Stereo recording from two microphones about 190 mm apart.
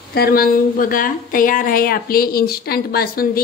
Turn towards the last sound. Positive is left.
turn(degrees=50)  # may be behind; listen again after turning